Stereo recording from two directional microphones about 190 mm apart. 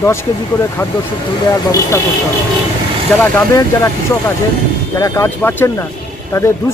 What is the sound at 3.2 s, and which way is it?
Speech, 15° left (ahead or behind).